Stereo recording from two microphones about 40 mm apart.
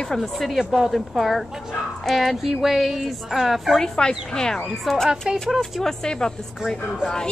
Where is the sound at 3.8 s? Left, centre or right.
Centre.